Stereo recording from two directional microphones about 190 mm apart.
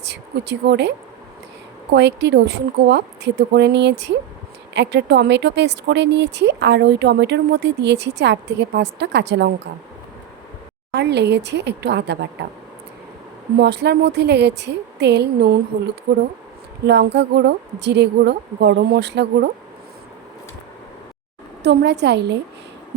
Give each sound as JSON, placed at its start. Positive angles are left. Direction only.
{"t": 0.0, "sound": "speech", "side_deg": -60}
{"t": 10.9, "sound": "speech", "side_deg": -65}
{"t": 13.6, "sound": "speech", "side_deg": -60}
{"t": 21.6, "sound": "speech", "side_deg": -65}